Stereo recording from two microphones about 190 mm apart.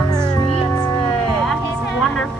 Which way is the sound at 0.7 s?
5° left (ahead or behind).